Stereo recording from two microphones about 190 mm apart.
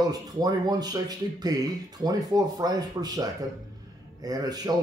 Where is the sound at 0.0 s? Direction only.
20° right (ahead or behind).